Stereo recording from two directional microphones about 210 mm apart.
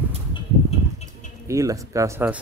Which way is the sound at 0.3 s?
30° left (ahead or behind).